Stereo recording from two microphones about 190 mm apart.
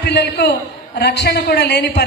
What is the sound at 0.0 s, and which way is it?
A man's voice, 60° left (ahead or behind).